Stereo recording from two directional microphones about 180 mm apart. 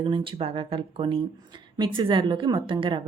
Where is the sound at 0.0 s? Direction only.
30° right (ahead or behind).